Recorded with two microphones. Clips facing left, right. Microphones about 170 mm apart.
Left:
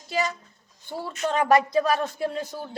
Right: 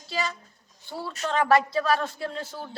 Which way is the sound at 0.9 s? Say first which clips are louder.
Left 2 dB; 20° left (ahead or behind).